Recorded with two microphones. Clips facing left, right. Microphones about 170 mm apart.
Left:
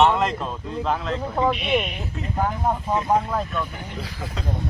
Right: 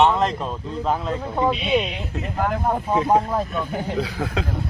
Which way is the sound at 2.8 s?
10° right (ahead or behind).